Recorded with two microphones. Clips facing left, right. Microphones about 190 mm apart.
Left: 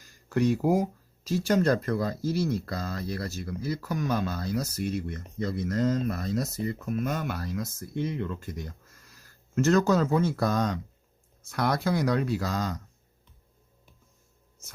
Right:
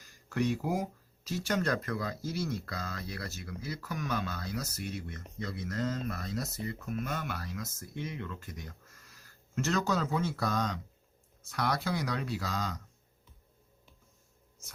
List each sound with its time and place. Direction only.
0.3 s speech: 35° left (ahead or behind)
9.6 s speech: 45° left (ahead or behind)